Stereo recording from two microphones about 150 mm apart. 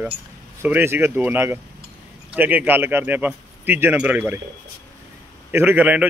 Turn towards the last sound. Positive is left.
turn(degrees=-10)  # may be behind; listen again after turning